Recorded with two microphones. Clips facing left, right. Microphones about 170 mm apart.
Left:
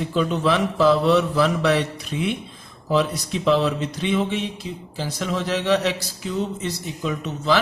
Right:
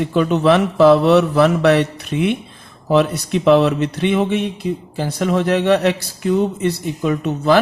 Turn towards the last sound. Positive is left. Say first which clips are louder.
# right 7 dB
turn(degrees=-55)  # may be behind; listen again after turning